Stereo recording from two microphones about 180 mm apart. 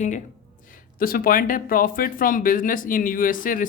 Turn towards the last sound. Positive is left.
turn(degrees=50)  # may be behind; listen again after turning